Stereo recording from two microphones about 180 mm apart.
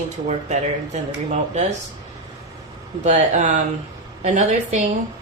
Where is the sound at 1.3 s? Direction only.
40° right (ahead or behind).